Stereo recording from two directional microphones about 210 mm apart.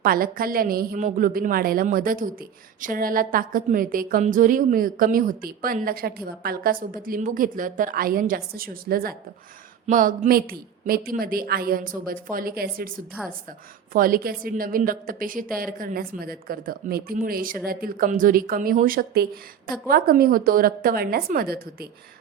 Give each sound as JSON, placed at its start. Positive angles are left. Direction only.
{"t": 0.0, "sound": "a woman's voice", "side_deg": -45}
{"t": 13.9, "sound": "a woman's voice", "side_deg": -40}